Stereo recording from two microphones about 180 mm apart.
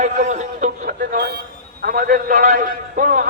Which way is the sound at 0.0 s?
40° right (ahead or behind).